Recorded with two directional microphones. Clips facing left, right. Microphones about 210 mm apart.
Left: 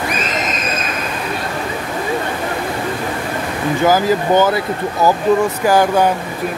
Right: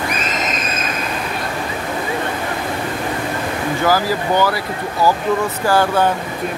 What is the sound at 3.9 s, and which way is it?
Speech, 20° left (ahead or behind).